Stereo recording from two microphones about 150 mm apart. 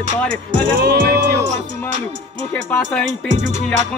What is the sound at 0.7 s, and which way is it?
Music, 90° right.